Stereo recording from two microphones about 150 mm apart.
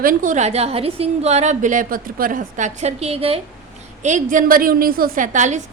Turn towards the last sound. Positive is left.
turn(degrees=-55)  # may be behind; listen again after turning